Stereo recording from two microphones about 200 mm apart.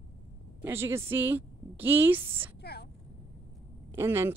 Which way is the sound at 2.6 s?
55° left (ahead or behind).